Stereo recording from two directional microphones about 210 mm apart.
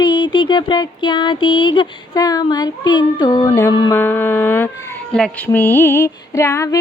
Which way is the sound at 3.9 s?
10° left (ahead or behind).